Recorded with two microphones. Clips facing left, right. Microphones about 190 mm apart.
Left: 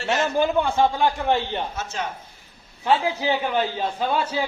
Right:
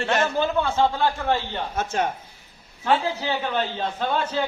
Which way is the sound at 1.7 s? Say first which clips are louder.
Right 5 dB; 55° right (ahead or behind).